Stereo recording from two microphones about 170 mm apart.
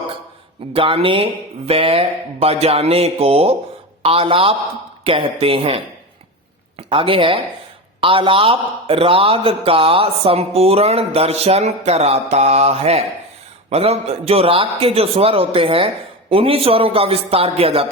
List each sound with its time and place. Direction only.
0.7 s speech: 35° right (ahead or behind)